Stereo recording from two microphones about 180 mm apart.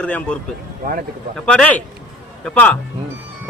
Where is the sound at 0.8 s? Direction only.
50° right (ahead or behind).